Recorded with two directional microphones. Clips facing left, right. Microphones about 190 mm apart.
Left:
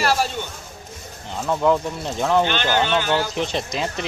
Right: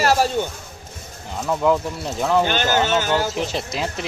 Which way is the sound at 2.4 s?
45° right (ahead or behind).